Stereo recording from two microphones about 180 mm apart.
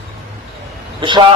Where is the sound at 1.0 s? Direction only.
25° right (ahead or behind).